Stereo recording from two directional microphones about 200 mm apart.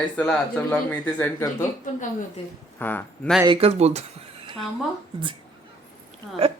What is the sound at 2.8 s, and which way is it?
Speech, 10° left (ahead or behind).